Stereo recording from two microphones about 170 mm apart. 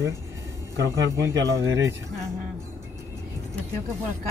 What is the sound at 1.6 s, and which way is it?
Speech, 20° right (ahead or behind).